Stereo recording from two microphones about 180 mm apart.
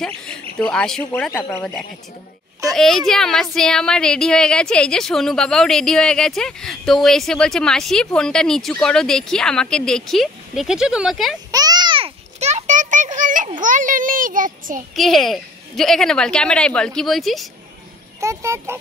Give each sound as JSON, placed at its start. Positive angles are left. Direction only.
{"t": 0.0, "sound": "a woman's voice", "side_deg": 5}
{"t": 2.6, "sound": "a sound", "side_deg": 0}
{"t": 3.1, "sound": "a woman's voice", "side_deg": 0}
{"t": 11.5, "sound": "a sound", "side_deg": -20}
{"t": 15.0, "sound": "a woman's voice", "side_deg": 0}
{"t": 18.2, "sound": "speech", "side_deg": -15}